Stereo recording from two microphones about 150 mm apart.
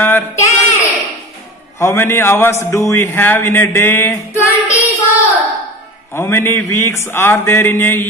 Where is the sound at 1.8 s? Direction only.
15° left (ahead or behind).